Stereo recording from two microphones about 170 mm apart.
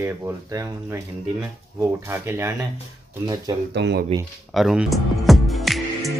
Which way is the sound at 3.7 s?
80° right.